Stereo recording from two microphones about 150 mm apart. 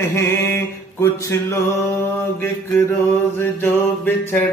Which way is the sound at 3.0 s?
15° left (ahead or behind).